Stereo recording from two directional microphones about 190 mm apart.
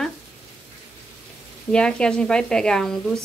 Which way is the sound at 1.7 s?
5° left (ahead or behind).